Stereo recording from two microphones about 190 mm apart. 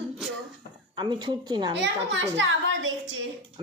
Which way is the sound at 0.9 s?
25° right (ahead or behind).